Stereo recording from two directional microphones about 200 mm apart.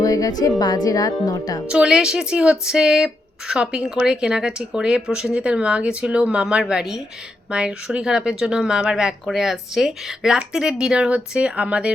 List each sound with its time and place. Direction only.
0.0 s music: 15° left (ahead or behind)
0.6 s speech: 20° left (ahead or behind)
1.6 s speech: 5° right (ahead or behind)